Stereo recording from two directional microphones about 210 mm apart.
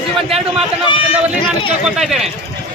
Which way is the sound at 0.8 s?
25° left (ahead or behind).